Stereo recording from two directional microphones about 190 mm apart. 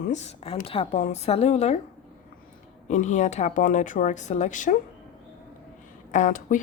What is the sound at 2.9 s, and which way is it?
A woman's voice, 40° left (ahead or behind).